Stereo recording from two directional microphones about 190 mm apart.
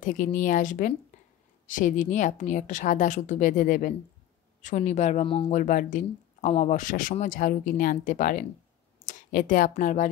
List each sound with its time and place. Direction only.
0.0 s a woman's voice: 45° left (ahead or behind)